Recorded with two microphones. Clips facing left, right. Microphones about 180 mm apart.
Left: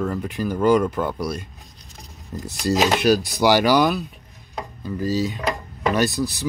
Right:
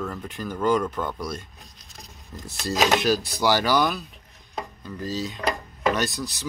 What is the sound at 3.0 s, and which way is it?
Speech, 10° left (ahead or behind).